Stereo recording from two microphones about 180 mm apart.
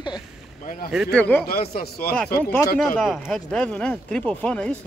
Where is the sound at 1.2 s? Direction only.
10° left (ahead or behind).